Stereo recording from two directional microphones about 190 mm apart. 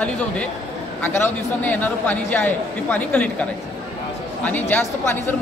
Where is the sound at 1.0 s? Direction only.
10° left (ahead or behind).